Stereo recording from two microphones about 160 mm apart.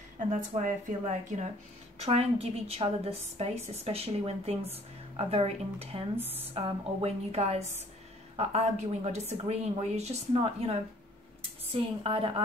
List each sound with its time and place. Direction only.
0.3 s a woman's voice: 50° right (ahead or behind)
6.1 s speech: 10° right (ahead or behind)
6.5 s a woman's voice: 40° right (ahead or behind)